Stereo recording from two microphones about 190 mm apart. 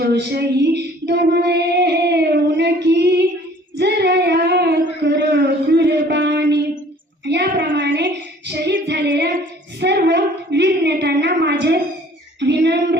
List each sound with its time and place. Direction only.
0.0 s child singing: 60° right (ahead or behind)
2.8 s female singing: 60° right (ahead or behind)
3.8 s child singing: 60° right (ahead or behind)
7.7 s child singing: 70° right (ahead or behind)
8.4 s female singing: 65° right (ahead or behind)
9.8 s a sound: 65° right (ahead or behind)
12.4 s child singing: 65° right (ahead or behind)